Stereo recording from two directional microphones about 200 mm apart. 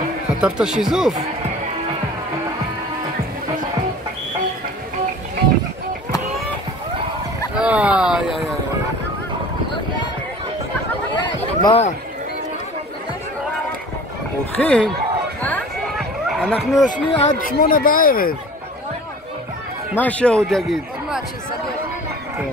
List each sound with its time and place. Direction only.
0.4 s a man's voice: 5° right (ahead or behind)
7.5 s a man's voice: 5° right (ahead or behind)
11.1 s a sound: 25° left (ahead or behind)
14.6 s speech: 5° left (ahead or behind)
16.3 s a sound: 5° left (ahead or behind)
16.7 s speech: 20° left (ahead or behind)
17.3 s speech: 45° left (ahead or behind)
20.0 s a man's voice: 5° left (ahead or behind)